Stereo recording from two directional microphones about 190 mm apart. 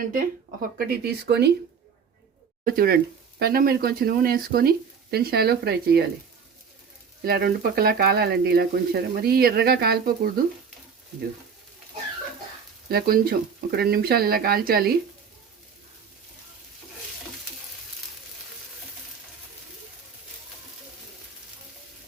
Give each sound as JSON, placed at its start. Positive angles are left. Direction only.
{"t": 0.8, "sound": "speech", "side_deg": -55}
{"t": 2.6, "sound": "speech", "side_deg": -50}
{"t": 7.3, "sound": "speech", "side_deg": -55}
{"t": 12.9, "sound": "speech", "side_deg": -55}